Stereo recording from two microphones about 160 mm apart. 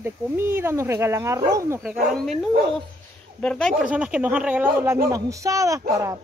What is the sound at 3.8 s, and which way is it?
Speech, 5° right (ahead or behind).